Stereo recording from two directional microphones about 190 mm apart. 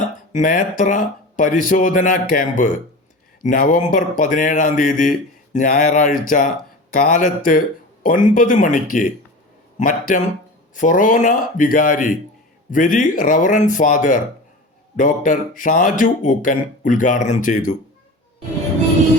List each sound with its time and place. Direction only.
0.3 s speech: 45° left (ahead or behind)